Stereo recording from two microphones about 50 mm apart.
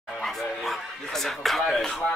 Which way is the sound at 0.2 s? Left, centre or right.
Centre.